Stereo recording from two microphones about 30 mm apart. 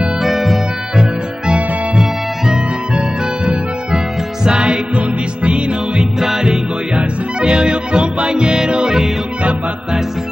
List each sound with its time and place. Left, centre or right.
0.2 s music: centre
4.5 s music: right
6.1 s music: centre
7.0 s music: right